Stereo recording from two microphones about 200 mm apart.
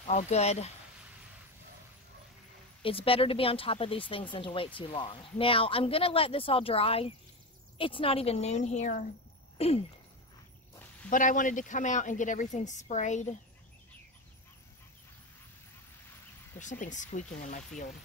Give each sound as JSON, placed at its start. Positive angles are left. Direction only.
{"t": 0.0, "sound": "a woman's voice", "side_deg": 35}
{"t": 2.8, "sound": "a woman's voice", "side_deg": 30}
{"t": 11.1, "sound": "a woman's voice", "side_deg": 40}
{"t": 16.5, "sound": "a woman's voice", "side_deg": 40}